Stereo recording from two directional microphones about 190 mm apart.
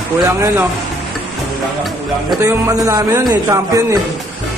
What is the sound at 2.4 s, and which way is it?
A man's voice, 15° right (ahead or behind).